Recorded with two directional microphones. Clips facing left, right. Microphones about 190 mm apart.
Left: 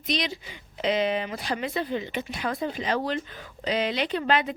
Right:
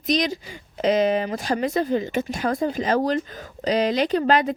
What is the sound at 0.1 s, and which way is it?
Speech, 45° right (ahead or behind).